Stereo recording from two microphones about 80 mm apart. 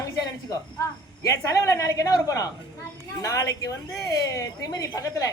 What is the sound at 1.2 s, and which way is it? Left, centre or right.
Speech, left.